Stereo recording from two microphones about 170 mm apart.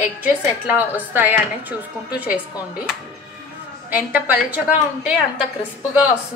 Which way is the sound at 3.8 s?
10° right (ahead or behind).